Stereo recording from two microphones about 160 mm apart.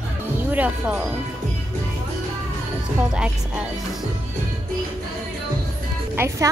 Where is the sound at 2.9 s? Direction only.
5° right (ahead or behind).